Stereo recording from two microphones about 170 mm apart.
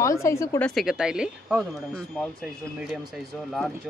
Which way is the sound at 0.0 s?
15° left (ahead or behind).